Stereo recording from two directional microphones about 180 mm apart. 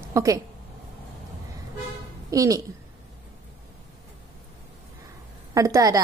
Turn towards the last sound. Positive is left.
turn(degrees=-20)  # may be behind; listen again after turning